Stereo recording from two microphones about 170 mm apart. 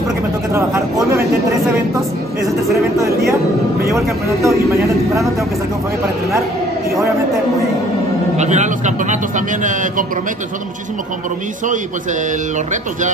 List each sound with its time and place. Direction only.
0.5 s speech: 15° right (ahead or behind)
2.7 s speech: 15° right (ahead or behind)
8.4 s a man's voice: 45° right (ahead or behind)